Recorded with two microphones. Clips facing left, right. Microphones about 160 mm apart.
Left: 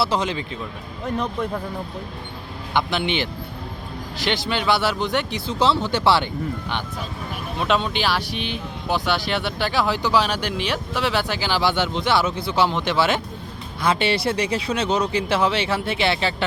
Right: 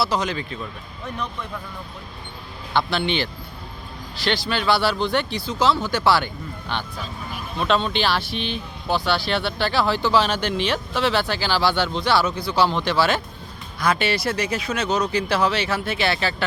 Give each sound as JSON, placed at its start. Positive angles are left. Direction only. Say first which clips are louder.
{"t": 0.0, "sound": "speech", "louder": "left 1 dB", "side_deg": 25}
{"t": 1.0, "sound": "speech", "louder": "left 6 dB", "side_deg": 40}
{"t": 2.7, "sound": "speech", "louder": "even", "side_deg": 15}
{"t": 7.6, "sound": "speech", "louder": "right 1 dB", "side_deg": 10}